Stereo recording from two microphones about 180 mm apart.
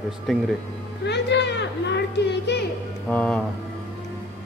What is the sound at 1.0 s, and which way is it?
Children playing, 70° left (ahead or behind).